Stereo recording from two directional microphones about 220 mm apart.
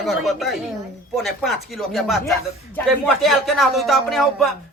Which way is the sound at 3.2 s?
Centre (ahead or behind).